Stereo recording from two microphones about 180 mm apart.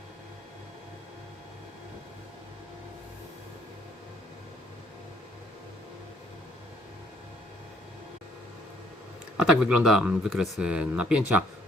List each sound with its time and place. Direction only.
9.4 s speech: 5° right (ahead or behind)